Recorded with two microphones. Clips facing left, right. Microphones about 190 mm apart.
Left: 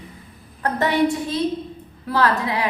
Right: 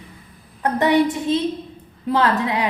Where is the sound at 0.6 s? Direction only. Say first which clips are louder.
Right 3 dB; 20° right (ahead or behind).